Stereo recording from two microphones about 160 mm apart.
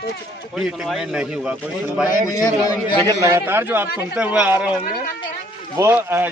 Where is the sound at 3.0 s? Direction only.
20° right (ahead or behind).